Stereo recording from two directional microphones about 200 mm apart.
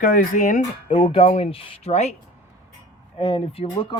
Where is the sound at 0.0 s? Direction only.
40° left (ahead or behind).